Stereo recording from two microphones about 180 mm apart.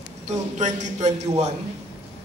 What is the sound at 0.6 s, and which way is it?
Speech, 40° right (ahead or behind).